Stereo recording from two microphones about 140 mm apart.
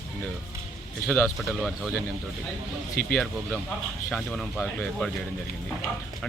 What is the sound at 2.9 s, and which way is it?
Speech, 90° left.